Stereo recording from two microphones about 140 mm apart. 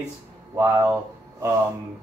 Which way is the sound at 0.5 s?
20° right (ahead or behind).